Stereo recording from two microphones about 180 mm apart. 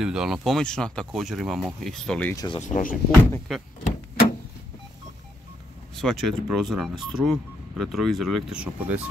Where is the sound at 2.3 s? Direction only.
25° left (ahead or behind).